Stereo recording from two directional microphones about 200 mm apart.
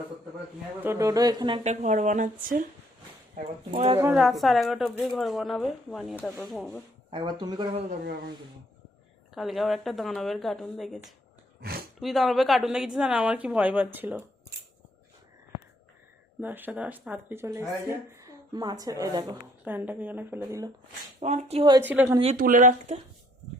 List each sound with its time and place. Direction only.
0.8 s speech: 15° right (ahead or behind); by 2.6 s 40° right (ahead or behind)
3.3 s speech: 30° right (ahead or behind)
4.1 s speech: centre (ahead or behind)
7.1 s speech: 25° right (ahead or behind)
8.0 s speech: 50° right (ahead or behind)
9.3 s speech: centre (ahead or behind)
16.4 s speech: 10° right (ahead or behind)
21.2 s speech: 35° right (ahead or behind)
21.8 s speech: 10° right (ahead or behind)
22.2 s speech: 40° right (ahead or behind)